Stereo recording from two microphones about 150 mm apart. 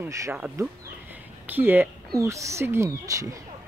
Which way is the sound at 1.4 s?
10° right (ahead or behind).